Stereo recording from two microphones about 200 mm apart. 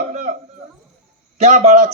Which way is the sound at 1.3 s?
35° right (ahead or behind).